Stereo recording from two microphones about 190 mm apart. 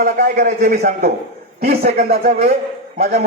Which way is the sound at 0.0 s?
50° right (ahead or behind).